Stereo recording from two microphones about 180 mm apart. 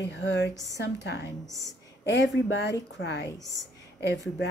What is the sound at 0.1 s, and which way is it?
A woman's voice, 75° left (ahead or behind).